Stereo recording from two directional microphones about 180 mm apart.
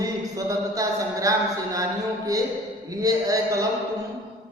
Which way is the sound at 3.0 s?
20° right (ahead or behind).